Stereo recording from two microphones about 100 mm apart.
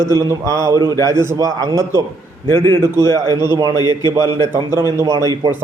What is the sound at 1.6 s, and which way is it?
Speech, 40° right (ahead or behind).